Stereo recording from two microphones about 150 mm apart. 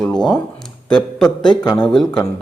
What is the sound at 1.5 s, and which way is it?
Speech, 25° left (ahead or behind).